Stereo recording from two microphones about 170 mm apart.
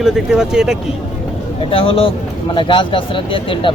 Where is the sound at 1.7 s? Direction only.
35° left (ahead or behind).